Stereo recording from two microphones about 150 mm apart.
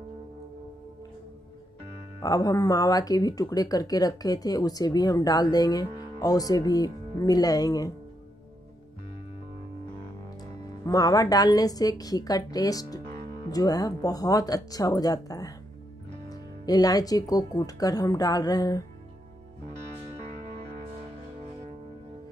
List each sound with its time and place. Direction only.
2.1 s speech: 25° left (ahead or behind)
10.9 s speech: 25° left (ahead or behind)